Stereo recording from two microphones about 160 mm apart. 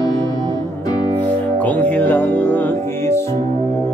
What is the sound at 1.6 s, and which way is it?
Music, 10° left (ahead or behind).